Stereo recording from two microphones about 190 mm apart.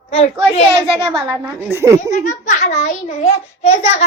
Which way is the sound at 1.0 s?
25° right (ahead or behind).